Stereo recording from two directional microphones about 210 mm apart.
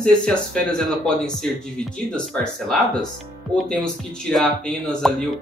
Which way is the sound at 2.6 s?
5° left (ahead or behind).